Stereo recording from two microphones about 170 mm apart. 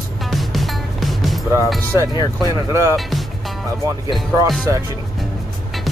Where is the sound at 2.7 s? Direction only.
15° right (ahead or behind).